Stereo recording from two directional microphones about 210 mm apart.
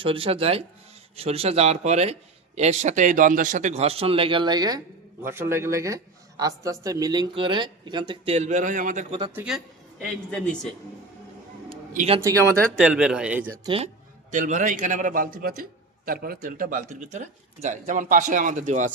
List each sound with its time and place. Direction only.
0.0 s a man's voice: 25° right (ahead or behind)
9.3 s speech: 5° right (ahead or behind)
11.9 s speech: 25° right (ahead or behind)
12.8 s speech: 5° right (ahead or behind)
13.7 s a man's voice: 30° right (ahead or behind)